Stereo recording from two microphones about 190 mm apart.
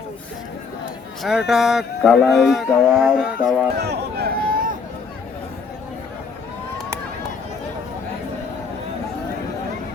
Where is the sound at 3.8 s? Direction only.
60° right (ahead or behind).